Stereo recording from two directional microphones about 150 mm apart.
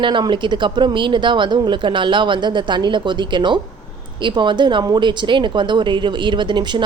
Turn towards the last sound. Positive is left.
turn(degrees=-30)  # may be behind; listen again after turning